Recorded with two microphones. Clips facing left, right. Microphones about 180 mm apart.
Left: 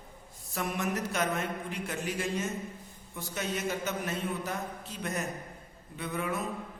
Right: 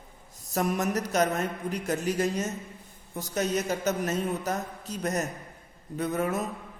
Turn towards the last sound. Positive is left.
turn(degrees=-40)  # may be behind; listen again after turning